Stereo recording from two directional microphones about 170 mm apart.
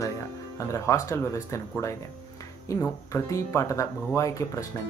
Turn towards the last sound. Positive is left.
turn(degrees=20)  # may be behind; listen again after turning